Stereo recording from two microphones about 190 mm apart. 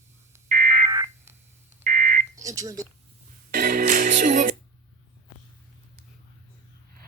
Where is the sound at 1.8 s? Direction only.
45° right (ahead or behind).